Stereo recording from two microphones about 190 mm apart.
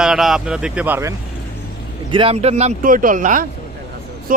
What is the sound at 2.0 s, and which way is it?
Speech, 25° right (ahead or behind).